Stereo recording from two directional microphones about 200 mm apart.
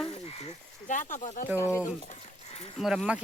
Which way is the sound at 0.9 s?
40° left (ahead or behind).